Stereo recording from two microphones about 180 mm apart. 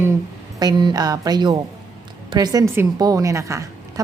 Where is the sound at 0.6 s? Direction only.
25° right (ahead or behind).